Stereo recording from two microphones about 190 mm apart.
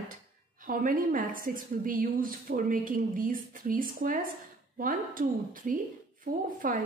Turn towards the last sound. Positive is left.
turn(degrees=-45)  # may be behind; listen again after turning